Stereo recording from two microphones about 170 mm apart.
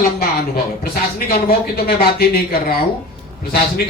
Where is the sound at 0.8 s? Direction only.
60° left (ahead or behind).